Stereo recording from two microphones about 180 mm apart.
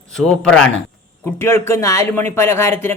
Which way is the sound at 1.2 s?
15° left (ahead or behind).